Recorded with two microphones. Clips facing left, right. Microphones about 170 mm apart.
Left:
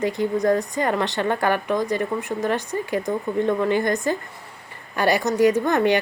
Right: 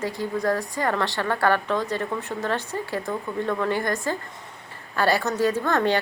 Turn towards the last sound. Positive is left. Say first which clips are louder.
# left 4 dB
turn(degrees=15)  # may be behind; listen again after turning